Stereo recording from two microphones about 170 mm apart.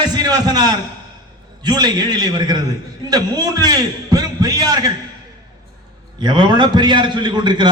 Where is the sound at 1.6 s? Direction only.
25° right (ahead or behind).